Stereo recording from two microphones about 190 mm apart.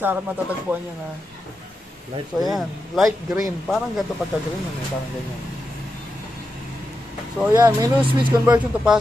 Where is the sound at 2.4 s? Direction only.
Centre (ahead or behind).